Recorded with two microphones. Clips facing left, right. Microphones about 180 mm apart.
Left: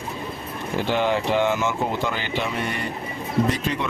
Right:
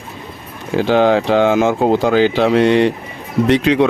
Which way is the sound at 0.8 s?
90° right.